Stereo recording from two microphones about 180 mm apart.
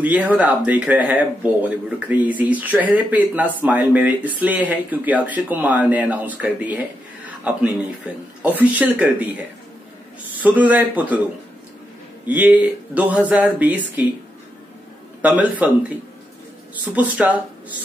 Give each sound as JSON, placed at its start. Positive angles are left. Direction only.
{"t": 0.0, "sound": "speech", "side_deg": -10}
{"t": 7.2, "sound": "a sound", "side_deg": -10}
{"t": 8.4, "sound": "speech", "side_deg": -10}
{"t": 10.4, "sound": "speech", "side_deg": -10}
{"t": 12.3, "sound": "speech", "side_deg": -10}
{"t": 15.2, "sound": "speech", "side_deg": -10}